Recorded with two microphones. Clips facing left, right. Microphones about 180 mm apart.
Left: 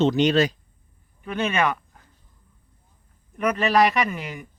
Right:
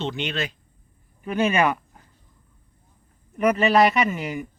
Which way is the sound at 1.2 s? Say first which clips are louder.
Right 3 dB; 10° right (ahead or behind).